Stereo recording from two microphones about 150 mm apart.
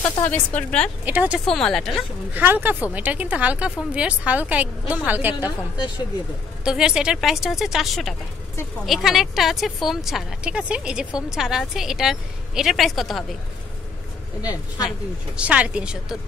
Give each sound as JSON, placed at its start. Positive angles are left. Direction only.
{"t": 0.2, "sound": "a woman's voice", "side_deg": 10}
{"t": 1.0, "sound": "a woman's voice", "side_deg": -10}
{"t": 1.4, "sound": "a woman's voice", "side_deg": 5}
{"t": 2.3, "sound": "a woman's voice", "side_deg": -15}
{"t": 6.6, "sound": "a woman's voice", "side_deg": -5}
{"t": 14.4, "sound": "speech", "side_deg": 25}
{"t": 14.9, "sound": "a woman's voice", "side_deg": -5}